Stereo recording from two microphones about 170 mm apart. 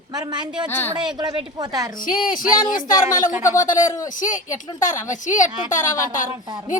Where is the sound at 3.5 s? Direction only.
50° left (ahead or behind).